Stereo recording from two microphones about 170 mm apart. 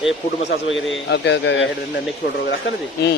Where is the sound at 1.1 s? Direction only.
90° left.